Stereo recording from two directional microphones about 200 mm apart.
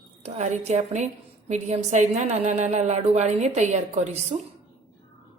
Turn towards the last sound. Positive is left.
turn(degrees=-35)  # may be behind; listen again after turning